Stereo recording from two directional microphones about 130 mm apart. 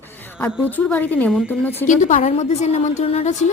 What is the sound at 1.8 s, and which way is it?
A woman's voice, 75° left (ahead or behind).